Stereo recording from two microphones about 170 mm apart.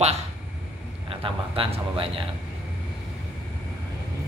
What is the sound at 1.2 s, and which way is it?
Speech, 30° right (ahead or behind).